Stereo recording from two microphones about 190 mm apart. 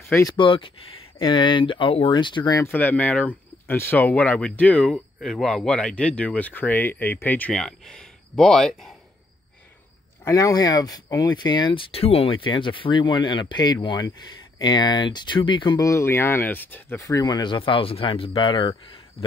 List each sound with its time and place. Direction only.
0.4 s speech: 25° left (ahead or behind); by 8.9 s centre (ahead or behind)
10.2 s speech: 15° left (ahead or behind)